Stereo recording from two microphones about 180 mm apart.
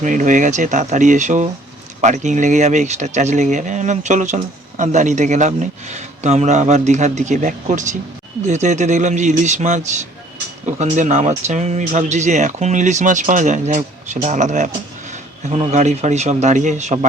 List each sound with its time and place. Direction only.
0.0 s speech: 45° right (ahead or behind)